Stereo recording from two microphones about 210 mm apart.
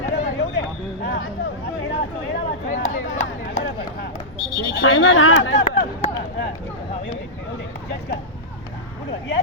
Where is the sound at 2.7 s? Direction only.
35° left (ahead or behind).